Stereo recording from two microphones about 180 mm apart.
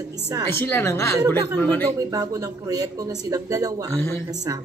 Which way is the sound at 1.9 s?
20° right (ahead or behind).